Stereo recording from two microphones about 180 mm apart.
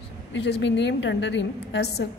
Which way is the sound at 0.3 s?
75° left (ahead or behind).